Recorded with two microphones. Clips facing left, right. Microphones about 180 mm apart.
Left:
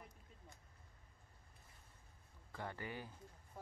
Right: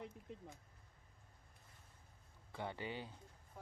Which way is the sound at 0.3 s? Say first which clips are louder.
Right 14 dB; 80° right.